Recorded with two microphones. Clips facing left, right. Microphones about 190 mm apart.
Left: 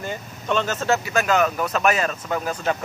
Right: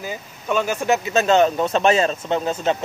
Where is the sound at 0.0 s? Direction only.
5° right (ahead or behind).